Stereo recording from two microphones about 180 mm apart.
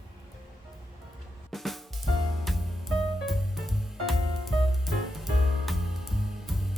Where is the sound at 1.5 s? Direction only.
Centre (ahead or behind).